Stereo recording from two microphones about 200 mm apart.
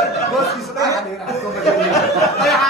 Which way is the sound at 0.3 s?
Centre (ahead or behind).